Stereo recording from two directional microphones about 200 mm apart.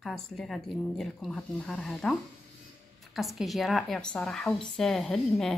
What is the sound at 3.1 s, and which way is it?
Speech, centre (ahead or behind).